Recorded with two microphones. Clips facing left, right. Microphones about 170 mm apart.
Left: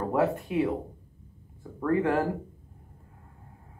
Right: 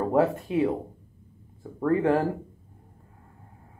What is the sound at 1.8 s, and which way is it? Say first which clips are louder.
Speech: right 3 dB; 30° right (ahead or behind).